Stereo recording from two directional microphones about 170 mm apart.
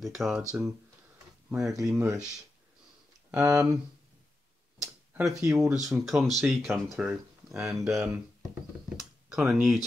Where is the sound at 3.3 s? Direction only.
15° right (ahead or behind).